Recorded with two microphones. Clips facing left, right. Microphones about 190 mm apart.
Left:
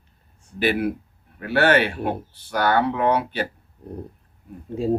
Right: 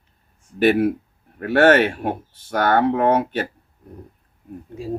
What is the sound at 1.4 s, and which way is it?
Speech, 45° right (ahead or behind).